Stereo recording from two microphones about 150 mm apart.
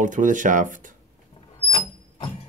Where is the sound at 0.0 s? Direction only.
60° right (ahead or behind).